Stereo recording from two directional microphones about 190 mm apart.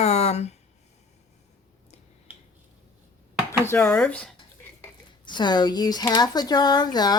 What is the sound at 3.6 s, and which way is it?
Speech, 10° left (ahead or behind).